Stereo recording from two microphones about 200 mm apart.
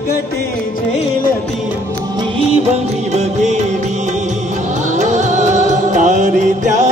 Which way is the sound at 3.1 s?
35° right (ahead or behind).